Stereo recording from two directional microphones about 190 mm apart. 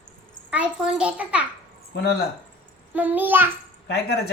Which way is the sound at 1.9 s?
60° left (ahead or behind).